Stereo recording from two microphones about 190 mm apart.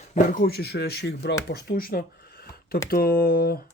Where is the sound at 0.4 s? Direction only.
55° left (ahead or behind).